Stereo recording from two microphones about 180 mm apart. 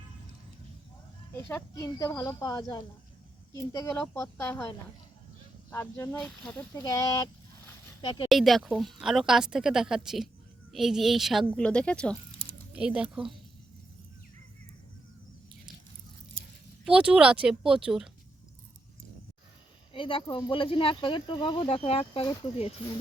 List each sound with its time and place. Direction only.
1.5 s speech: 15° left (ahead or behind)
5.7 s speech: 10° left (ahead or behind)
6.8 s speech: 20° left (ahead or behind)
8.3 s a woman's voice: centre (ahead or behind)
12.7 s a woman's voice: 5° right (ahead or behind)
16.8 s a woman's voice: 5° right (ahead or behind)
19.9 s speech: 30° left (ahead or behind)